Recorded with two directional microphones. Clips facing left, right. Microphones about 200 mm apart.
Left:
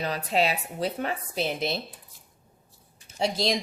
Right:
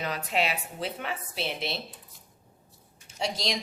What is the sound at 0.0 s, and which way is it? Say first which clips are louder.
A woman's voice: left 4 dB; 35° left (ahead or behind).